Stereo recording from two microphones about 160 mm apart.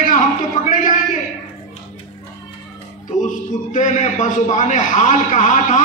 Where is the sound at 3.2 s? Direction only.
50° left (ahead or behind).